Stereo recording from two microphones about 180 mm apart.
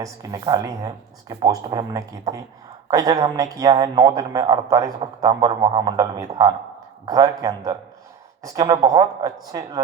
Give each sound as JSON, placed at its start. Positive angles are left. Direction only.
{"t": 0.0, "sound": "a man's voice", "side_deg": -20}